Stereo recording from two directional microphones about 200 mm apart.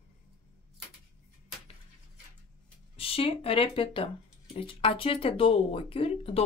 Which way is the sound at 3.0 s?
30° left (ahead or behind).